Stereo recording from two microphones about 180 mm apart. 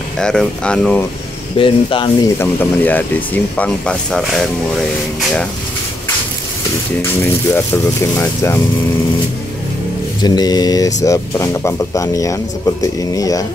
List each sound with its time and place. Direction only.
0.2 s speech: 5° left (ahead or behind)
1.6 s speech: 30° left (ahead or behind)
2.3 s speech: 10° left (ahead or behind)
7.0 s speech: 10° left (ahead or behind)
10.2 s speech: 20° left (ahead or behind)